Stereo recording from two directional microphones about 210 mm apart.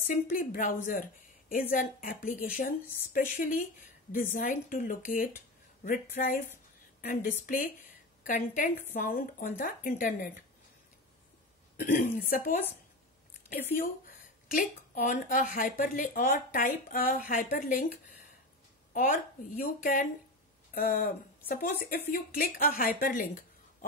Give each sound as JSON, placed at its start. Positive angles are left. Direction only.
{"t": 0.1, "sound": "speech", "side_deg": 40}
{"t": 11.7, "sound": "speech", "side_deg": 40}
{"t": 14.5, "sound": "speech", "side_deg": 40}
{"t": 18.9, "sound": "speech", "side_deg": 40}